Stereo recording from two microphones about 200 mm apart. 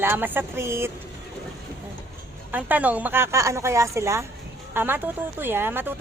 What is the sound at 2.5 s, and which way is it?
Speech, 10° right (ahead or behind).